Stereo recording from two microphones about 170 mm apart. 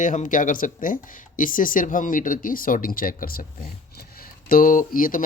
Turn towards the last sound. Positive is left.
turn(degrees=55)  # may be behind; listen again after turning